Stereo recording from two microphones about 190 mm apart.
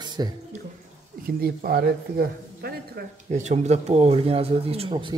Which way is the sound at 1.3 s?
50° right (ahead or behind).